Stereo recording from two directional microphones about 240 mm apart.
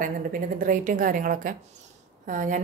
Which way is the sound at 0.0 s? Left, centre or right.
Right.